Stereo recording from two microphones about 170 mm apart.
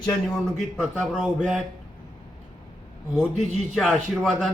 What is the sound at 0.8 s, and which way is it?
Speech, 5° right (ahead or behind).